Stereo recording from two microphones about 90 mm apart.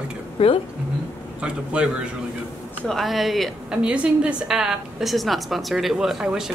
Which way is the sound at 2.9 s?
Centre (ahead or behind).